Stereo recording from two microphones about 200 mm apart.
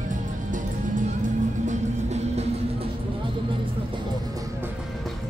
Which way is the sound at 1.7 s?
35° right (ahead or behind).